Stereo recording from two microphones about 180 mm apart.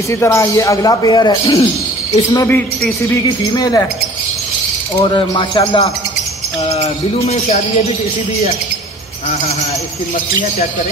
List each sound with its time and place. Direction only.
0.1 s a man's voice: 15° left (ahead or behind)
2.3 s a man's voice: 10° left (ahead or behind)
3.3 s speech: 20° left (ahead or behind)
5.0 s speech: 25° left (ahead or behind)
6.7 s speech: 35° left (ahead or behind)